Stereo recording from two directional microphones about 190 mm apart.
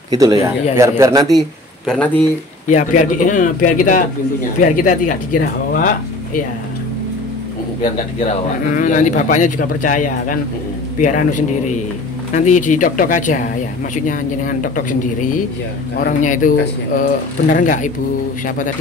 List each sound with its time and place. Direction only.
0.2 s speech: 20° right (ahead or behind)
1.9 s a man's voice: 5° left (ahead or behind)
2.7 s speech: 40° left (ahead or behind)
8.6 s a man's voice: 45° left (ahead or behind)